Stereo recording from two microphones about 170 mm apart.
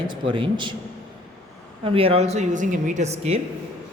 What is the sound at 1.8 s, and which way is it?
A woman's voice, 35° right (ahead or behind).